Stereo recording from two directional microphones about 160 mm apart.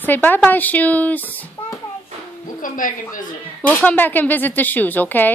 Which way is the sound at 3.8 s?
10° left (ahead or behind).